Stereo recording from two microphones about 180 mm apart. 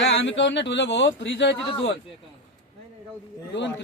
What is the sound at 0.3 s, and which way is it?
A man's voice, 85° left.